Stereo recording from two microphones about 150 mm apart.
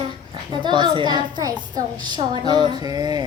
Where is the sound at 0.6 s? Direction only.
30° right (ahead or behind).